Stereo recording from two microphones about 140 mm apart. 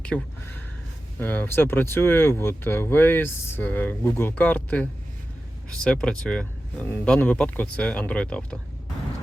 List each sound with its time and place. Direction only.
0.0 s speech: 10° left (ahead or behind)